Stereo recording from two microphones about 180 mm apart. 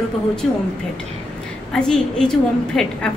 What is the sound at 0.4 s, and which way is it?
Speech, centre (ahead or behind).